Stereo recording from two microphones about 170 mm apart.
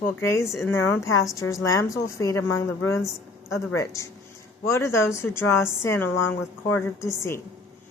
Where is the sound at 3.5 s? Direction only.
20° left (ahead or behind).